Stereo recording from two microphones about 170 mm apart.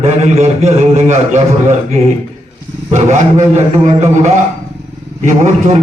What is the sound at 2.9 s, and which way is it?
A man's voice, 45° right (ahead or behind).